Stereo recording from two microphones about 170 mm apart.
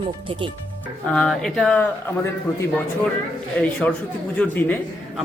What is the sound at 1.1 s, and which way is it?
Speech, centre (ahead or behind).